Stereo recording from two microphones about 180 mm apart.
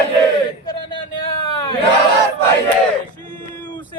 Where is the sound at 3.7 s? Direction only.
25° left (ahead or behind).